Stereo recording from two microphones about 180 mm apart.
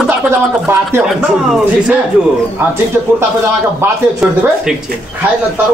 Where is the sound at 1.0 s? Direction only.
Centre (ahead or behind).